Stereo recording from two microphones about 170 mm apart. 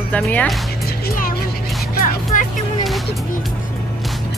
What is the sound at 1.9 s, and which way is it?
Music, 50° left (ahead or behind).